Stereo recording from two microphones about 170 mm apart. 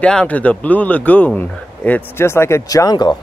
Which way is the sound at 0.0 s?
5° left (ahead or behind).